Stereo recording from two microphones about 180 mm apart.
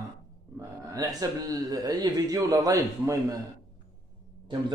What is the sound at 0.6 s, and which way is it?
Speech, 20° right (ahead or behind).